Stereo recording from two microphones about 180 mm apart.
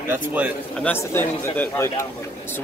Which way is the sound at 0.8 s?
10° left (ahead or behind).